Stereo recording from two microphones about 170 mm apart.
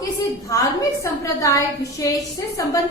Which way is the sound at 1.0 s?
20° left (ahead or behind).